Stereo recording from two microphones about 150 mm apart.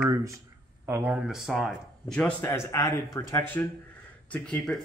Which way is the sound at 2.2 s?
15° left (ahead or behind).